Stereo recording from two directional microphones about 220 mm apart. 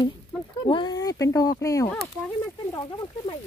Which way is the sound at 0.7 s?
20° left (ahead or behind).